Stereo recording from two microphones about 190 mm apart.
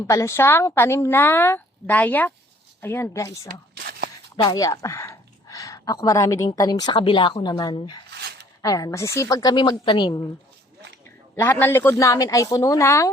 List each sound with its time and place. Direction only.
0.1 s a woman's voice: 15° left (ahead or behind)
11.3 s a woman's voice: 10° left (ahead or behind)